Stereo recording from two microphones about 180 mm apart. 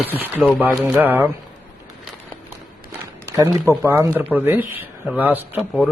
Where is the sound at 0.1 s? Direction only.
10° right (ahead or behind).